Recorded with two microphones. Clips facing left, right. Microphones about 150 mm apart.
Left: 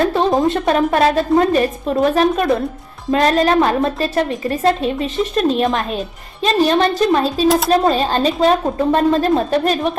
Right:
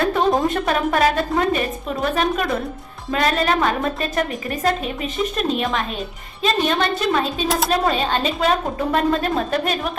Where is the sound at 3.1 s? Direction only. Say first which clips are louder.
Left 6 dB; 40° left (ahead or behind).